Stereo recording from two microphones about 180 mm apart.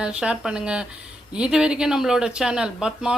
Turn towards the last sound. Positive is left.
turn(degrees=-5)  # may be behind; listen again after turning